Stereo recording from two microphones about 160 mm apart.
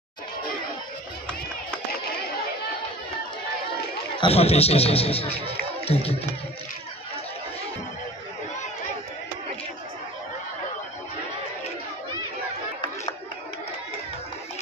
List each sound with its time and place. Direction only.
4.2 s speech: 40° left (ahead or behind)